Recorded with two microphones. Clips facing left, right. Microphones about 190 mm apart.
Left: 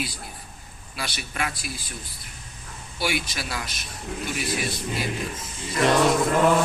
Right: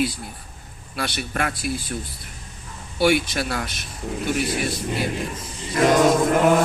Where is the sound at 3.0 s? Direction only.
55° right (ahead or behind).